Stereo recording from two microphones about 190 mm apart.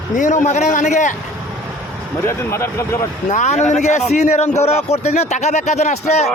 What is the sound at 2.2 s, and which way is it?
Speech, 15° left (ahead or behind).